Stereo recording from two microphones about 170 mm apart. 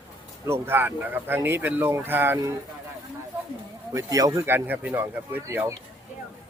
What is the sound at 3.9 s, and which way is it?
Speech, 20° right (ahead or behind).